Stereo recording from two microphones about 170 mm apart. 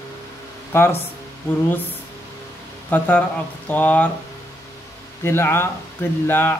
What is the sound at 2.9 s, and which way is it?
Speech, 10° left (ahead or behind).